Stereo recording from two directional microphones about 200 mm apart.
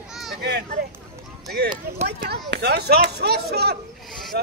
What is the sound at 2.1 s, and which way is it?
Speech, 55° right (ahead or behind).